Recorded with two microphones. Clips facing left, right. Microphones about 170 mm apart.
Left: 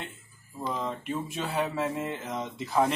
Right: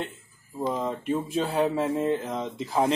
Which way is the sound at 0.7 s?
25° right (ahead or behind).